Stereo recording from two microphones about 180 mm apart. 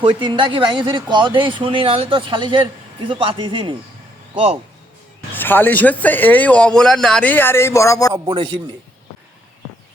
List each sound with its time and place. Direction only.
0.0 s speech: 25° right (ahead or behind)
5.3 s speech: 10° left (ahead or behind)
8.1 s speech: 25° right (ahead or behind)